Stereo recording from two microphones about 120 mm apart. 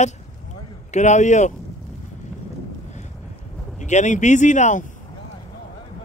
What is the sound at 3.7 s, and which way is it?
Speech, 85° left.